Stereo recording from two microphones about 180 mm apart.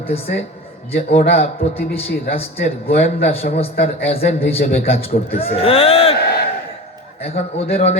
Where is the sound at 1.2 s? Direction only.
60° left (ahead or behind).